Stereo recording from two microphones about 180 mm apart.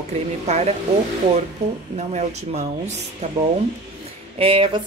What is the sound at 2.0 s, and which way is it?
Speech, 40° right (ahead or behind).